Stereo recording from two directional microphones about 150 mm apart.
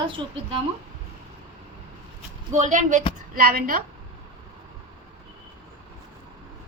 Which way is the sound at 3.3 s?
75° right (ahead or behind).